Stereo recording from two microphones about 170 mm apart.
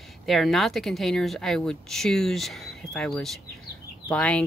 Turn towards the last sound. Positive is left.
turn(degrees=5)  # may be behind; listen again after turning